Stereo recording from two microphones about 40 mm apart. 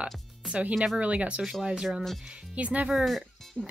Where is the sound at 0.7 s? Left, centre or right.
Centre.